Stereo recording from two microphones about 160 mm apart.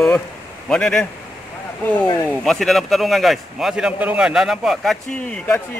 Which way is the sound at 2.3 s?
Centre (ahead or behind).